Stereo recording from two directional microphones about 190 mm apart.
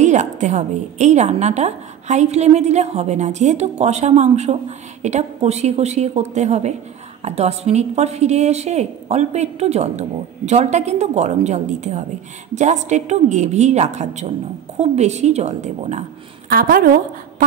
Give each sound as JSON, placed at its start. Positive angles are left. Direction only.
{"t": 0.0, "sound": "a woman's voice", "side_deg": -40}
{"t": 16.4, "sound": "a woman's voice", "side_deg": -50}